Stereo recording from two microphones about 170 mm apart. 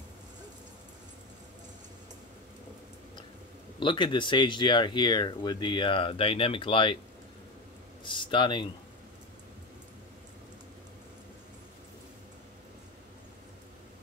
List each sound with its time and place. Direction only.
3.8 s speech: 30° left (ahead or behind)
8.0 s speech: 30° left (ahead or behind)